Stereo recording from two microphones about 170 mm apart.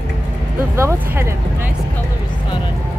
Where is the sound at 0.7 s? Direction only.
15° right (ahead or behind).